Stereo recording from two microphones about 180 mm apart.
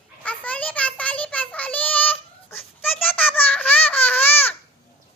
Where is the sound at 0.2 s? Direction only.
10° left (ahead or behind).